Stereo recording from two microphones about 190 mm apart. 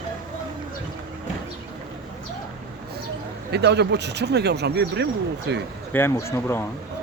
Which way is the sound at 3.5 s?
60° right (ahead or behind).